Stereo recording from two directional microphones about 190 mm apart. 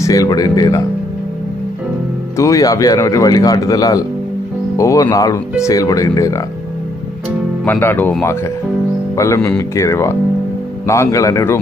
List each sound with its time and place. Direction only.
0.0 s speech: 20° left (ahead or behind)
2.4 s speech: 15° left (ahead or behind)
7.6 s speech: 10° left (ahead or behind)